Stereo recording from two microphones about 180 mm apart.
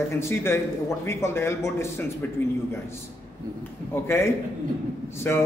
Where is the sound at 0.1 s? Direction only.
15° left (ahead or behind).